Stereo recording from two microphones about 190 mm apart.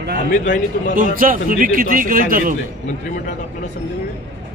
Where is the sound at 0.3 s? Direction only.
45° left (ahead or behind).